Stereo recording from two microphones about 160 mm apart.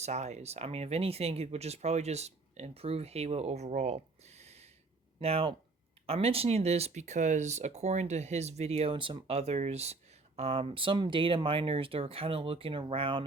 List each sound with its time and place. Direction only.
0.0 s speech: 45° right (ahead or behind)